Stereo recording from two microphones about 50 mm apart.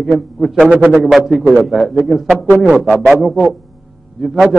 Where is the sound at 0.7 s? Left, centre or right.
Right.